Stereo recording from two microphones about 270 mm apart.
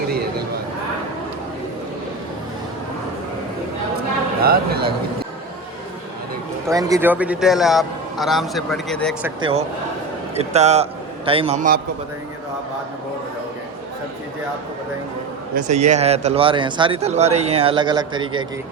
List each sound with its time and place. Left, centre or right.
4.4 s a sound: right
6.7 s a man's voice: centre
9.4 s speech: right
15.5 s speech: right